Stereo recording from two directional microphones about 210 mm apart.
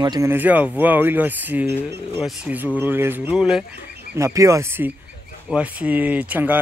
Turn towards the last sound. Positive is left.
turn(degrees=-10)  # may be behind; listen again after turning